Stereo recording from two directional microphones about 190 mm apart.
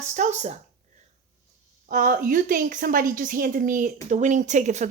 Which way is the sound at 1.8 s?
45° right (ahead or behind).